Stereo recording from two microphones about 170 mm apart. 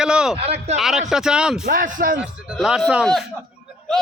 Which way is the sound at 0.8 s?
Centre (ahead or behind).